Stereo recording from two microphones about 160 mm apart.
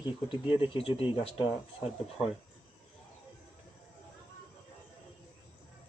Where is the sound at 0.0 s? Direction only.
30° left (ahead or behind).